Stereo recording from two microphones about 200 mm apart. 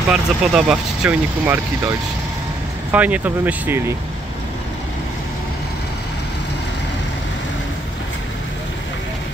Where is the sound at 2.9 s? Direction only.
5° right (ahead or behind).